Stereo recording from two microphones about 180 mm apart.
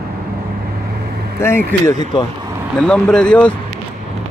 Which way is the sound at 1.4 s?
15° left (ahead or behind).